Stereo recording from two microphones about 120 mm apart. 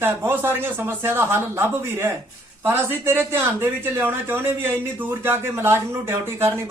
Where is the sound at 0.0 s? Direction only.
20° right (ahead or behind).